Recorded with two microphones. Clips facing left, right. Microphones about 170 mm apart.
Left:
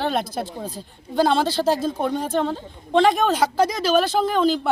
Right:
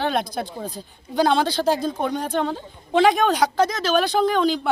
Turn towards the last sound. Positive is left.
turn(degrees=0)  # may be behind; listen again after turning